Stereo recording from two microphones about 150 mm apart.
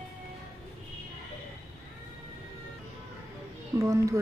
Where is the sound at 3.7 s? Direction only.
20° right (ahead or behind).